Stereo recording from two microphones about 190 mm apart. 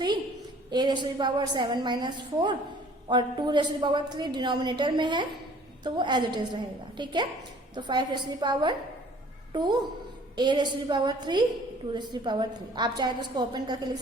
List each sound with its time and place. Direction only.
0.7 s a woman's voice: 20° right (ahead or behind)